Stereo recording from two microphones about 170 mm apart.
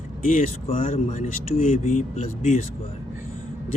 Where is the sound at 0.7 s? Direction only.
50° left (ahead or behind).